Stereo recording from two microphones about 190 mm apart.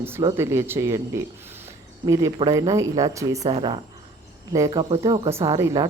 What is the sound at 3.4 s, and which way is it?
Speech, 30° right (ahead or behind).